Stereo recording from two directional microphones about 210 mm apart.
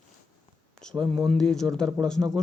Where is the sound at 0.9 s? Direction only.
20° right (ahead or behind).